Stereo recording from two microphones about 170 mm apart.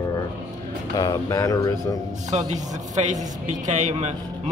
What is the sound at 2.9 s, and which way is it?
A man's voice, 45° right (ahead or behind).